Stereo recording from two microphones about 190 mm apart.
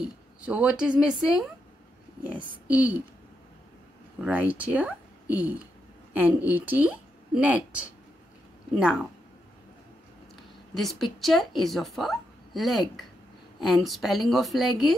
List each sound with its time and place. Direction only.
0.5 s a woman's voice: 5° right (ahead or behind)
2.3 s a child's voice: 25° right (ahead or behind)
2.7 s a woman's voice: 10° right (ahead or behind)
4.2 s a woman's voice: 10° right (ahead or behind)
10.7 s a woman's voice: centre (ahead or behind)